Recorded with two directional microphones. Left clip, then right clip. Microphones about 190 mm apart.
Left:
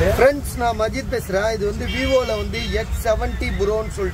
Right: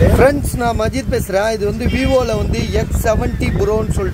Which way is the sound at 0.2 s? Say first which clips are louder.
Right 3 dB; 10° right (ahead or behind).